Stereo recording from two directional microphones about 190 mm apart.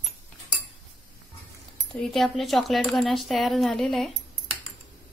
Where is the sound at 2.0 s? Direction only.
Centre (ahead or behind).